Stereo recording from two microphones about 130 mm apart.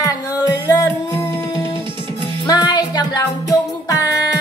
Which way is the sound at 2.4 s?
30° left (ahead or behind).